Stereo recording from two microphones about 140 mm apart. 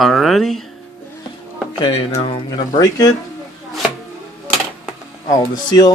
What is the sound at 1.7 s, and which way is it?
Speech, 35° left (ahead or behind).